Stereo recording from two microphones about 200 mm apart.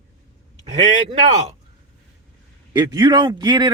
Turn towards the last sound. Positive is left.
turn(degrees=-20)  # may be behind; listen again after turning